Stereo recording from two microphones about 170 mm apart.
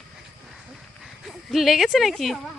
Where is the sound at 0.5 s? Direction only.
Centre (ahead or behind).